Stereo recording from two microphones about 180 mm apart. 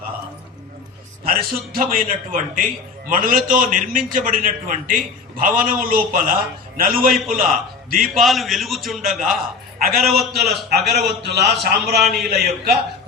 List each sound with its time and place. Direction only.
1.2 s a man's voice: 55° right (ahead or behind)
8.0 s a man's voice: centre (ahead or behind)
9.7 s a man's voice: 55° right (ahead or behind)
10.0 s a man's voice: centre (ahead or behind)
10.7 s a man's voice: 65° right (ahead or behind)
11.9 s a man's voice: centre (ahead or behind)
12.3 s a man's voice: 60° right (ahead or behind)